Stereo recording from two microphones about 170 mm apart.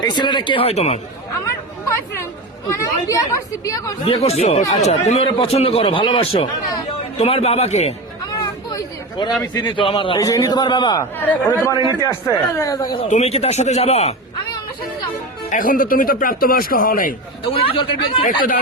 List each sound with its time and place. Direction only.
0.0 s a man's voice: 25° left (ahead or behind)
2.7 s a man's voice: 20° left (ahead or behind)
4.0 s a man's voice: 35° left (ahead or behind)
8.7 s a sound: 25° left (ahead or behind)
9.4 s a man's voice: 25° left (ahead or behind)
11.2 s a man's voice: 10° left (ahead or behind)
13.1 s a man's voice: 40° left (ahead or behind)
15.4 s speech: 50° left (ahead or behind)
17.5 s a man's voice: 30° left (ahead or behind)